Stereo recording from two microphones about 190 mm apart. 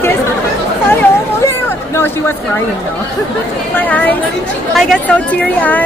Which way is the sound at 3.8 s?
10° left (ahead or behind).